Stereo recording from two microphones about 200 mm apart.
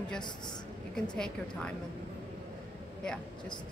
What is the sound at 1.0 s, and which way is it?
Speech, 5° left (ahead or behind).